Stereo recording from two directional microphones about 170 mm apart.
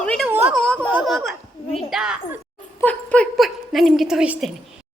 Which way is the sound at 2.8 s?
10° left (ahead or behind).